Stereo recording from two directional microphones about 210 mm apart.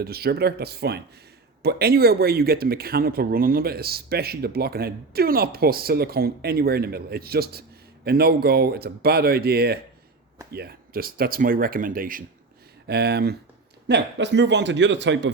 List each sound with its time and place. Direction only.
0.0 s speech: 50° right (ahead or behind)